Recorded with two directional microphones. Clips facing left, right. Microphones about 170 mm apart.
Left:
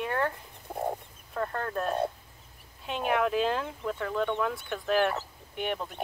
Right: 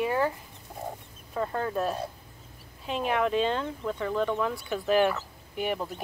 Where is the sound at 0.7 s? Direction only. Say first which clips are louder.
Left 6 dB; 55° left (ahead or behind).